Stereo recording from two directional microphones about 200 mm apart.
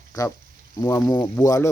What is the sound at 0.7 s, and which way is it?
Speech, 20° left (ahead or behind).